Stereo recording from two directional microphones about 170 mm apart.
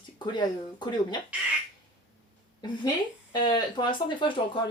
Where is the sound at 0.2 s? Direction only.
25° left (ahead or behind).